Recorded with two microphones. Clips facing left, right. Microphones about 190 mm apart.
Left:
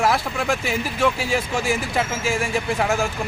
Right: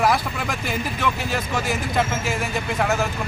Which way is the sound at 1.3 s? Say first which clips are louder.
Left 2 dB; 10° left (ahead or behind).